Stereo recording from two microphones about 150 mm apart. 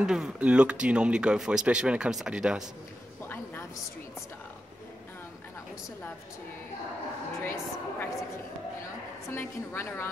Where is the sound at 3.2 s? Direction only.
15° left (ahead or behind).